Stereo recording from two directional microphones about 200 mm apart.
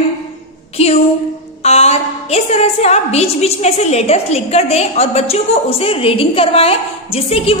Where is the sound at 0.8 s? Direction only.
30° left (ahead or behind).